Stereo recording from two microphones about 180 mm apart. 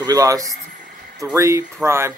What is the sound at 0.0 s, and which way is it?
Speech, 20° right (ahead or behind).